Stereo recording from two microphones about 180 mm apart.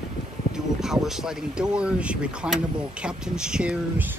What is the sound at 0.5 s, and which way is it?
Speech, 5° right (ahead or behind).